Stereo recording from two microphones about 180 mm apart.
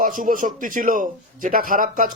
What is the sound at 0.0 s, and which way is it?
Speech, 45° right (ahead or behind).